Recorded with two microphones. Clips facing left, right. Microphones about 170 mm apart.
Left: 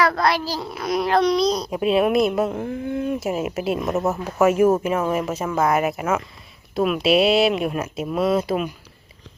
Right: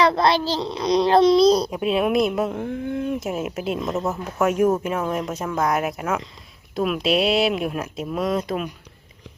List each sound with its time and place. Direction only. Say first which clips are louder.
0.0 s a child's voice: right 2 dB; 25° right (ahead or behind)
1.7 s speech: left 2 dB; centre (ahead or behind)